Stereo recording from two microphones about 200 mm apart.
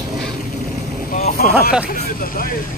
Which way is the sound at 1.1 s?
50° left (ahead or behind).